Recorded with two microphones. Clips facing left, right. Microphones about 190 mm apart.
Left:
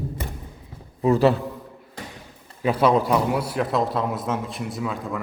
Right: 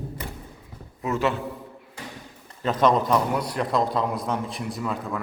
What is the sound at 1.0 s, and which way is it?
Speech, 35° left (ahead or behind).